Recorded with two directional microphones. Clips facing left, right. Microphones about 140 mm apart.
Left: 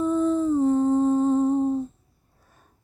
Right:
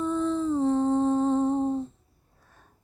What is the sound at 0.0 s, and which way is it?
Humming, 5° left (ahead or behind).